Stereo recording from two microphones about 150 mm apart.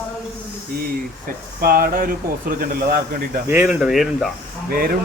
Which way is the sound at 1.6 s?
80° right.